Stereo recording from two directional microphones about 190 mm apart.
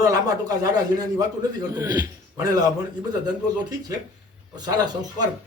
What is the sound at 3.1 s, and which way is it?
Speech, 20° right (ahead or behind).